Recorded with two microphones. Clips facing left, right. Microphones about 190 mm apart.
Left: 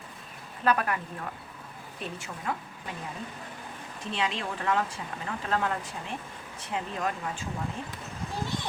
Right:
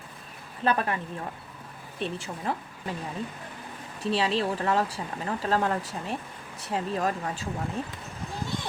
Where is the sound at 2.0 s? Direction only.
30° right (ahead or behind).